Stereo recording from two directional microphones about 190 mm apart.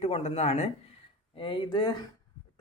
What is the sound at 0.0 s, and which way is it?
Speech, 35° left (ahead or behind).